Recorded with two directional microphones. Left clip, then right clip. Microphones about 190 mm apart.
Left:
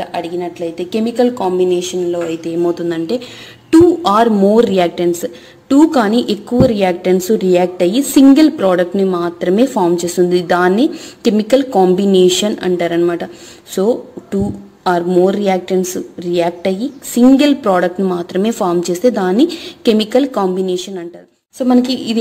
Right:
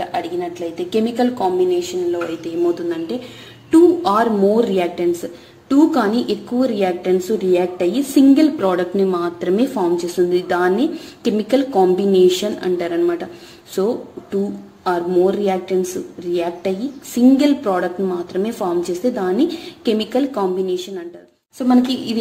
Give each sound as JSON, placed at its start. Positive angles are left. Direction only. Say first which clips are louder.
{"t": 0.0, "sound": "a woman's voice", "louder": "left 2 dB", "side_deg": 25}
{"t": 21.5, "sound": "a woman's voice", "louder": "left 3 dB", "side_deg": 30}